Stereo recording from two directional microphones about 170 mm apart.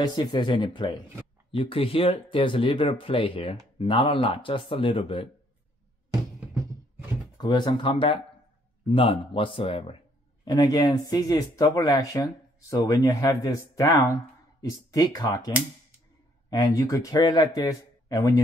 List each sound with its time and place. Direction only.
0.0 s speech: 25° left (ahead or behind)
7.3 s speech: 25° left (ahead or behind)
10.4 s speech: 20° left (ahead or behind)